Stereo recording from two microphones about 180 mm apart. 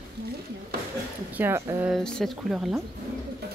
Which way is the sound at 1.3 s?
15° right (ahead or behind).